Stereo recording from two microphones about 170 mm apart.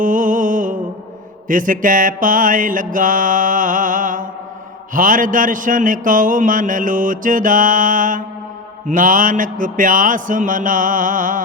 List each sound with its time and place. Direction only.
0.0 s music: 50° right (ahead or behind)
1.5 s mantra: 50° right (ahead or behind)